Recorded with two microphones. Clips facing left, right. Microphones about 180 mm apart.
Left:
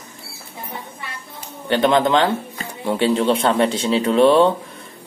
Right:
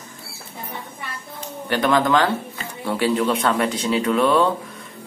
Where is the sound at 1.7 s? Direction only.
25° left (ahead or behind).